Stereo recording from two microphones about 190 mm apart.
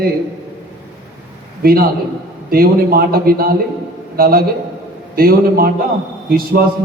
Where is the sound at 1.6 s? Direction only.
50° right (ahead or behind).